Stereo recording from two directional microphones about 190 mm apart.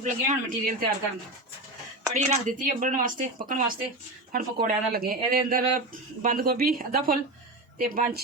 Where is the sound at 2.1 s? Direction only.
40° right (ahead or behind).